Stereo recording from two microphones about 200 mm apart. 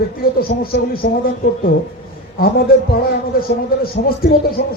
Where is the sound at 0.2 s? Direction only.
50° left (ahead or behind).